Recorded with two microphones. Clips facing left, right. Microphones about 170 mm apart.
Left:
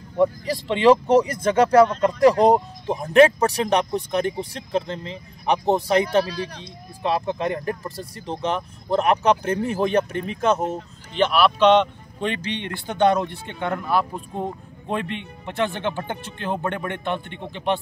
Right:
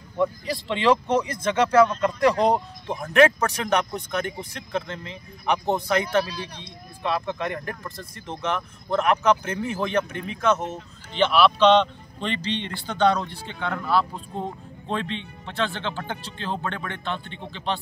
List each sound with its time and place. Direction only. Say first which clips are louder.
1.0 s speech: left 6 dB; 40° left (ahead or behind)
11.3 s a man's voice: left 1 dB; 10° left (ahead or behind)
12.4 s speech: even; 55° left (ahead or behind)
12.8 s speech: left 3 dB; 20° left (ahead or behind)